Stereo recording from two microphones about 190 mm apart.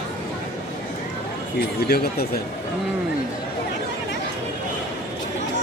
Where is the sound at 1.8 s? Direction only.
55° left (ahead or behind).